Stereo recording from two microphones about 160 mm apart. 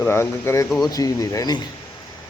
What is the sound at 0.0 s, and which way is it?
Speech, 15° left (ahead or behind).